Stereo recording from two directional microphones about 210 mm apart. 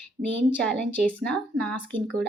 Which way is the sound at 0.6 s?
5° left (ahead or behind).